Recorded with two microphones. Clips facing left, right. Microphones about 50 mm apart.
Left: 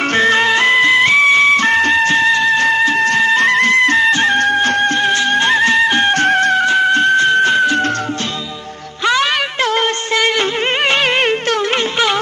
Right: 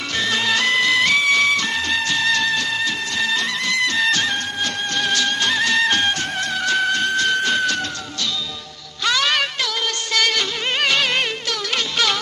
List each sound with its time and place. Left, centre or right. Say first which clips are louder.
0.1 s music: left 7 dB; left
4.0 s music: left 7 dB; left
4.4 s music: left 11 dB; left
6.1 s music: left 12 dB; left
6.6 s music: left 7 dB; left
9.0 s music: left 5 dB; left
9.6 s music: left 9 dB; left
10.1 s music: left 5 dB; left